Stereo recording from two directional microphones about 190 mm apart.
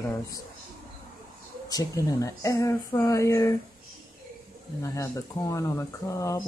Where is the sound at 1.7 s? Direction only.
20° left (ahead or behind).